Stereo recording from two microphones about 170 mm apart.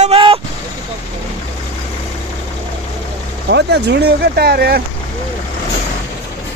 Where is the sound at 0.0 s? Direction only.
35° right (ahead or behind).